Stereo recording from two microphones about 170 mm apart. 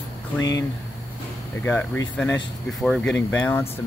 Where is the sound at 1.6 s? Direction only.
10° left (ahead or behind).